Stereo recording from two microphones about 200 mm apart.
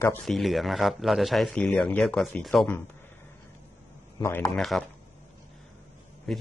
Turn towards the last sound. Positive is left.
turn(degrees=0)  # may be behind; listen again after turning